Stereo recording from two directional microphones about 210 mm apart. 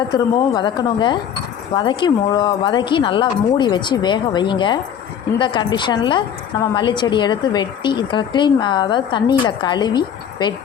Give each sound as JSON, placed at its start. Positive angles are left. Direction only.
{"t": 0.1, "sound": "speech", "side_deg": 20}